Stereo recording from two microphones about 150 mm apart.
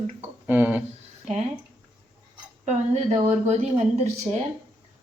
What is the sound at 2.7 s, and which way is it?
A woman's voice, 50° right (ahead or behind).